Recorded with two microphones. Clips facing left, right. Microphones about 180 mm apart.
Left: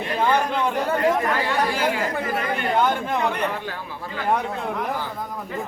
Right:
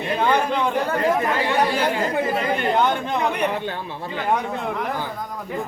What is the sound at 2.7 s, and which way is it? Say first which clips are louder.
Speech: right 1 dB; 5° left (ahead or behind).